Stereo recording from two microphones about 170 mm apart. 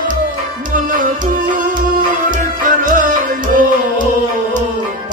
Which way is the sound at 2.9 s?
50° right (ahead or behind).